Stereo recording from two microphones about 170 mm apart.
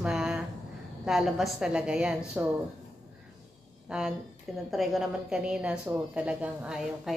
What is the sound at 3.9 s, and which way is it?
A woman's voice, 5° right (ahead or behind).